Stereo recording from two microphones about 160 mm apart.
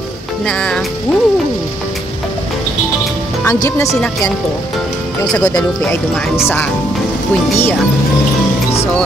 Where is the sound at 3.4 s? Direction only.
20° left (ahead or behind).